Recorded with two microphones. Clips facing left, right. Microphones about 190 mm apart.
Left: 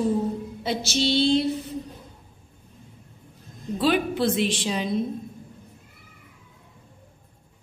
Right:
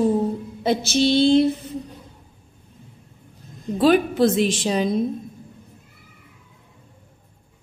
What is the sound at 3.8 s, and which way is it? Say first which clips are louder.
A woman's voice: right 6 dB; 45° right (ahead or behind).